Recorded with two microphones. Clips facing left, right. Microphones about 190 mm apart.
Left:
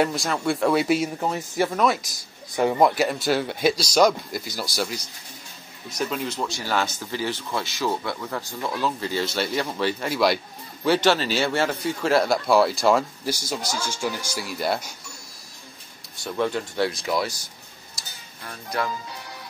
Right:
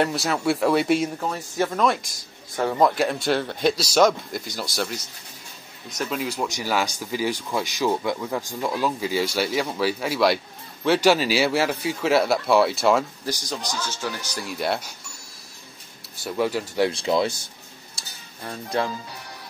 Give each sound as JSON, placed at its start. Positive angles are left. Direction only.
{"t": 0.0, "sound": "speech", "side_deg": -5}
{"t": 1.2, "sound": "speech", "side_deg": 15}
{"t": 16.2, "sound": "speech", "side_deg": -5}
{"t": 16.9, "sound": "speech", "side_deg": -25}
{"t": 17.9, "sound": "dishes", "side_deg": -25}